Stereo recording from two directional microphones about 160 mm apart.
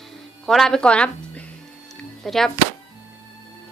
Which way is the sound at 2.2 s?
Centre (ahead or behind).